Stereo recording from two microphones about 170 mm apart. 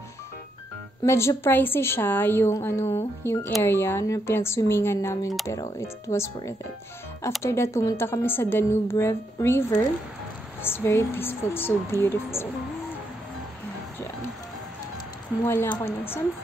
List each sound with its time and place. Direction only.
1.0 s a woman's voice: 15° left (ahead or behind)
15.4 s a woman's voice: 15° left (ahead or behind)